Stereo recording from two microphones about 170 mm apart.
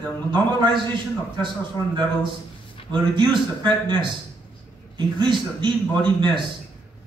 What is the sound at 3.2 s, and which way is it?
A man's voice, 25° right (ahead or behind).